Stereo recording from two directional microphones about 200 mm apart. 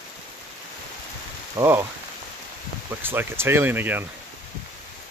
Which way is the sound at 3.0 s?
10° right (ahead or behind).